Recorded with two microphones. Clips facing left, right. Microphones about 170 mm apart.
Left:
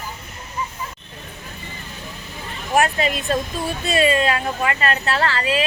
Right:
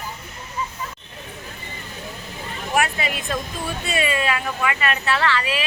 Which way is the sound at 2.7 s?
40° left (ahead or behind).